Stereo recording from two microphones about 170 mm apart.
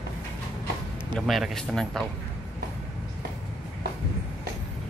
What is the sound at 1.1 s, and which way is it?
Speech, centre (ahead or behind).